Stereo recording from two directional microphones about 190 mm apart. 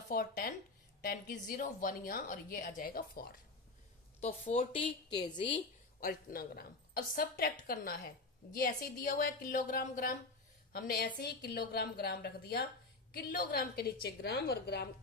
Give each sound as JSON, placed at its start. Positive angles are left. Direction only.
{"t": 0.1, "sound": "a woman's voice", "side_deg": 50}
{"t": 4.2, "sound": "a woman's voice", "side_deg": 35}
{"t": 6.0, "sound": "a woman's voice", "side_deg": 50}